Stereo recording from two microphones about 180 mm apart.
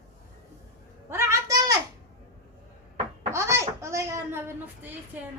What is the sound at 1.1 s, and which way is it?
Speech, 15° right (ahead or behind).